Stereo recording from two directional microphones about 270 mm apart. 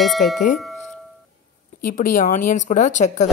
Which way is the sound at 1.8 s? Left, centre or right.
Left.